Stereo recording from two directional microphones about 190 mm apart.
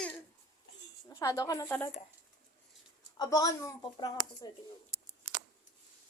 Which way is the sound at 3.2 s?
20° left (ahead or behind).